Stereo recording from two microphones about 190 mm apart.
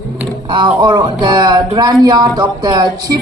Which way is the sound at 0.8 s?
20° right (ahead or behind).